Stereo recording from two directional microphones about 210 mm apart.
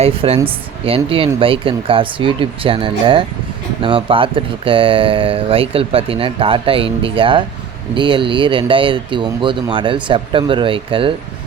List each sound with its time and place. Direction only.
0.0 s speech: 25° right (ahead or behind)